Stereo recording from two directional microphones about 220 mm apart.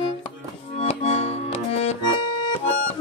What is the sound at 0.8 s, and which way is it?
Accordion, 30° left (ahead or behind).